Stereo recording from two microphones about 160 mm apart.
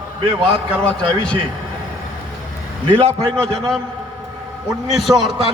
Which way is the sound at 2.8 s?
35° right (ahead or behind).